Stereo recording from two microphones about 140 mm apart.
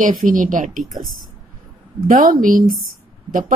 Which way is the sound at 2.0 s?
85° right.